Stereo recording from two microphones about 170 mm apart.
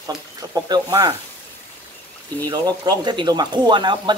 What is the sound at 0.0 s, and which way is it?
Speech, 20° right (ahead or behind).